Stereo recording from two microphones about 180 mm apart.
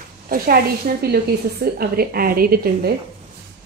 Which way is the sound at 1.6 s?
60° right (ahead or behind).